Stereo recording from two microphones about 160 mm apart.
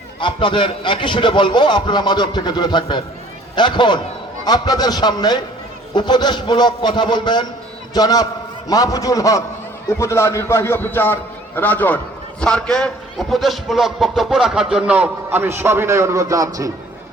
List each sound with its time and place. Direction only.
0.2 s a man's voice: 30° left (ahead or behind); by 16.7 s 20° right (ahead or behind)